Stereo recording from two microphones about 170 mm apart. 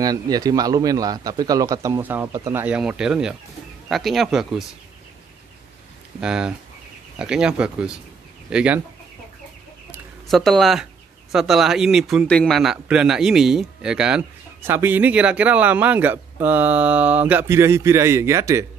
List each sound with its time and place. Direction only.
0.0 s a man's voice: 20° right (ahead or behind)
2.3 s a man's voice: 20° right (ahead or behind)
2.6 s speech: 5° right (ahead or behind)
6.2 s speech: 5° right (ahead or behind)
10.2 s speech: centre (ahead or behind); by 18.7 s 15° right (ahead or behind)